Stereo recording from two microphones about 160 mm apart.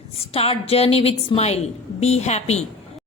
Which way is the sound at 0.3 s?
40° left (ahead or behind).